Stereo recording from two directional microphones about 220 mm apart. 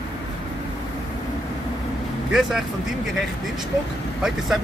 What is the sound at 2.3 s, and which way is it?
Speech, centre (ahead or behind).